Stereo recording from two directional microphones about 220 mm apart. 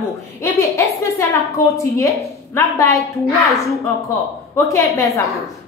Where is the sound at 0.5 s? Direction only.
15° left (ahead or behind).